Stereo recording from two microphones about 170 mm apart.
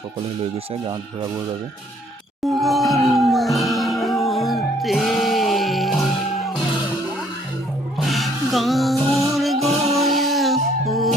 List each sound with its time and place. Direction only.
0.7 s speech: 25° right (ahead or behind)
2.5 s music: centre (ahead or behind)
7.9 s music: centre (ahead or behind)